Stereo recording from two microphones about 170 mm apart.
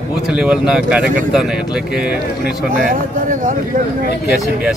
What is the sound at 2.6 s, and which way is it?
Speech, 55° right (ahead or behind).